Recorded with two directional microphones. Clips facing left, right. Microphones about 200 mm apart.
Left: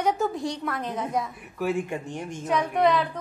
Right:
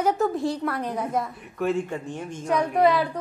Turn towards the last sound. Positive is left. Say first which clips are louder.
# right 2 dB
turn(degrees=-5)  # may be behind; listen again after turning